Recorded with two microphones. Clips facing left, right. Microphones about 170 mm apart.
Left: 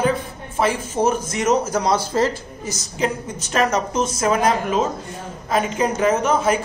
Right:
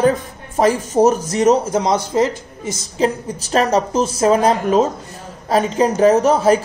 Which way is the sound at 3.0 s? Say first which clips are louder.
Right 5 dB; 35° right (ahead or behind).